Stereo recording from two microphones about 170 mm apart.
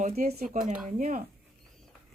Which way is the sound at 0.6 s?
5° right (ahead or behind).